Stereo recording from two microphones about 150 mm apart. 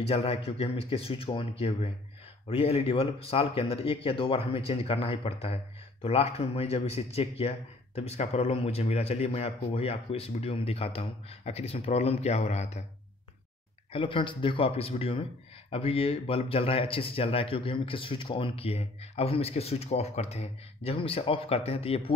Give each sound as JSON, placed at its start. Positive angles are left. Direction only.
{"t": 0.0, "sound": "a man's voice", "side_deg": 40}
{"t": 13.9, "sound": "speech", "side_deg": 35}